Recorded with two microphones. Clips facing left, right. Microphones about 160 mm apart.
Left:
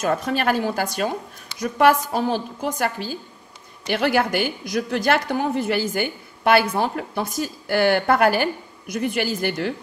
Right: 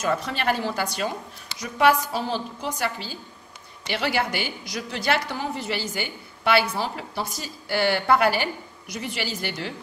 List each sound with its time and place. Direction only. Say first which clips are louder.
0.0 s a woman's voice: left 4 dB; 50° left (ahead or behind)